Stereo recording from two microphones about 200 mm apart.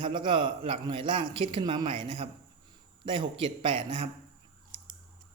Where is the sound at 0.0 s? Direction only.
25° right (ahead or behind).